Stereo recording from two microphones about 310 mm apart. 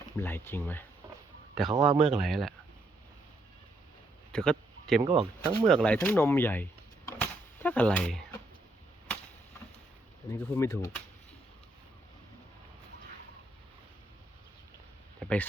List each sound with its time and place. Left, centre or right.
0.2 s speech: centre
1.1 s a sound: centre
1.7 s speech: centre
2.0 s speech: centre
4.3 s a sound: centre
5.0 s speech: centre
5.6 s speech: centre
10.3 s speech: centre
15.2 s a sound: centre